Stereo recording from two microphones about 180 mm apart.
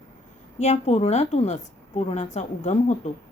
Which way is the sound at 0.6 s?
35° left (ahead or behind).